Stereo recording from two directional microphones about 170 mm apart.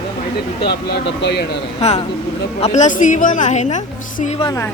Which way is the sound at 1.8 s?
40° left (ahead or behind).